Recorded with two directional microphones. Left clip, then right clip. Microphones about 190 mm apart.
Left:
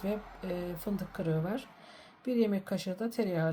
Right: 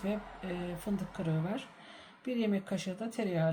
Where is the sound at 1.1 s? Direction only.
25° left (ahead or behind).